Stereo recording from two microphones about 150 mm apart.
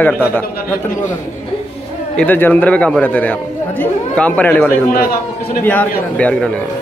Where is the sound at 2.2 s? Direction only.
10° left (ahead or behind).